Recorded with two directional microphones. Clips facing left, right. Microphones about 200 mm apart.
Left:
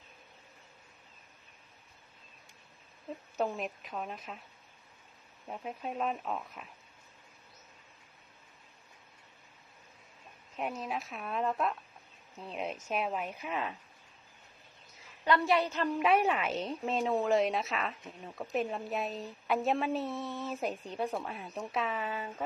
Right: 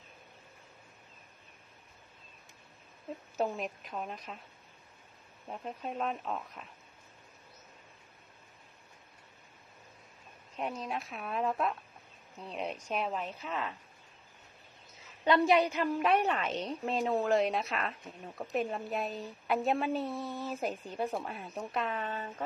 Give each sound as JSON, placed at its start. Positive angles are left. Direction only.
{"t": 3.3, "sound": "a woman's voice", "side_deg": 0}
{"t": 5.5, "sound": "a woman's voice", "side_deg": 0}
{"t": 10.6, "sound": "a woman's voice", "side_deg": 5}
{"t": 15.0, "sound": "a woman's voice", "side_deg": -20}
{"t": 16.0, "sound": "a woman's voice", "side_deg": 5}